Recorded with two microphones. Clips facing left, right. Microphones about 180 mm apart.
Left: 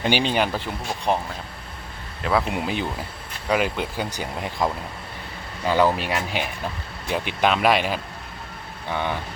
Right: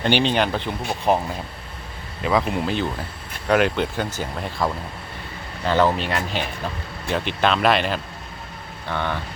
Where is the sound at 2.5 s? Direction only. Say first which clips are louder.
Right 2 dB; 10° left (ahead or behind).